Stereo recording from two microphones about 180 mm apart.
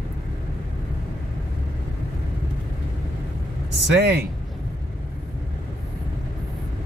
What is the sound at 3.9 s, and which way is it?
Speech, 60° right (ahead or behind).